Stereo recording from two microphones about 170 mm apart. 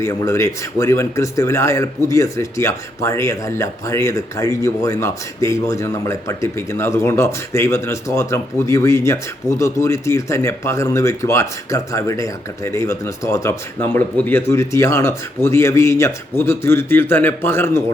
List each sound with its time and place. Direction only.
0.0 s speech: 20° left (ahead or behind)